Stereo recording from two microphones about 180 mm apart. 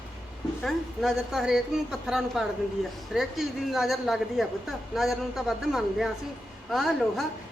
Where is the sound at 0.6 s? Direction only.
Centre (ahead or behind).